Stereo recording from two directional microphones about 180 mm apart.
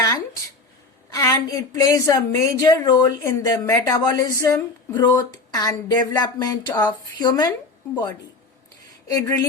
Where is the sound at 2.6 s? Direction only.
20° left (ahead or behind).